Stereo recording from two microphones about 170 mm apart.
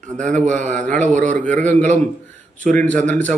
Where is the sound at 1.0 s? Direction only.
45° right (ahead or behind).